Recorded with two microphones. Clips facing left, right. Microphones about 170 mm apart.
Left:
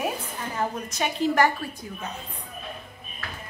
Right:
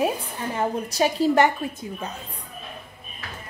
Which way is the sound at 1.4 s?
25° right (ahead or behind).